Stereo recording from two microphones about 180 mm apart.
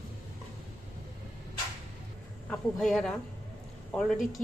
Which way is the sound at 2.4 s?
Centre (ahead or behind).